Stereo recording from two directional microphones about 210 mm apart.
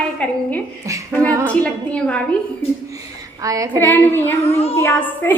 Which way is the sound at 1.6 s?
5° left (ahead or behind).